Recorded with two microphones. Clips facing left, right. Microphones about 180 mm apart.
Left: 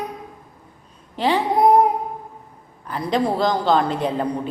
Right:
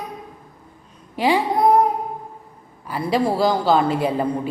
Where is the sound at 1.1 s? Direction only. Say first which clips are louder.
Right 1 dB; 10° right (ahead or behind).